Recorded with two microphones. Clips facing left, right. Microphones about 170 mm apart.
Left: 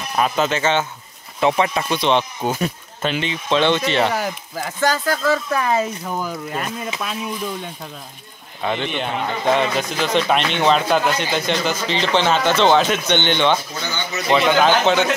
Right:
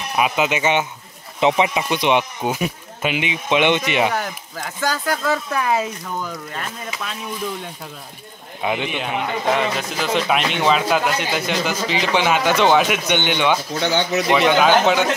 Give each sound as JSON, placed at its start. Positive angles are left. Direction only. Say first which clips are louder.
{"t": 0.1, "sound": "speech", "louder": "even", "side_deg": -10}
{"t": 4.1, "sound": "speech", "louder": "left 2 dB", "side_deg": 5}
{"t": 5.0, "sound": "speech", "louder": "left 2 dB", "side_deg": -15}
{"t": 6.2, "sound": "speech", "louder": "left 4 dB", "side_deg": 10}
{"t": 8.6, "sound": "speech", "louder": "even", "side_deg": -5}
{"t": 13.7, "sound": "speech", "louder": "right 7 dB", "side_deg": -80}
{"t": 14.3, "sound": "speech", "louder": "even", "side_deg": -10}